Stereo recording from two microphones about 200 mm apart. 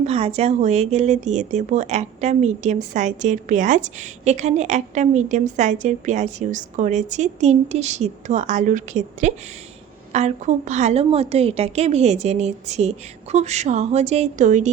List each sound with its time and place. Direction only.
0.0 s speech: 30° right (ahead or behind)